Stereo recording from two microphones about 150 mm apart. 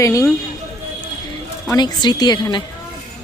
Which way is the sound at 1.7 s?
30° left (ahead or behind).